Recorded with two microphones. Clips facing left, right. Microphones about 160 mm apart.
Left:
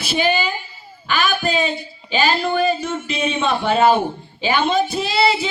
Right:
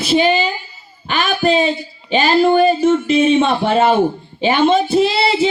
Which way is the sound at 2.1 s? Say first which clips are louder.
Right 7 dB; 40° right (ahead or behind).